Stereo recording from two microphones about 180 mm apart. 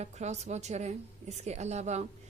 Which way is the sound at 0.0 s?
40° right (ahead or behind).